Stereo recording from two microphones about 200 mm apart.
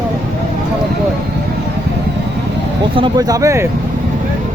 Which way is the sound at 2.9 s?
20° right (ahead or behind).